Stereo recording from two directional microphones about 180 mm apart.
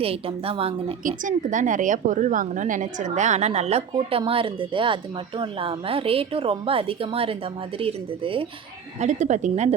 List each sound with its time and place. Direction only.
0.0 s a woman's voice: 30° right (ahead or behind)
1.0 s a woman's voice: 45° right (ahead or behind); by 8.4 s 30° right (ahead or behind)
9.0 s a woman's voice: 40° right (ahead or behind)